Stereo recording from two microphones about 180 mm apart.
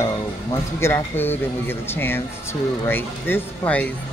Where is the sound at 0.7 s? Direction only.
15° left (ahead or behind).